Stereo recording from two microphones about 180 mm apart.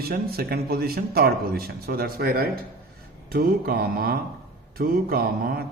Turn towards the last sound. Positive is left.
turn(degrees=-60)  # may be behind; listen again after turning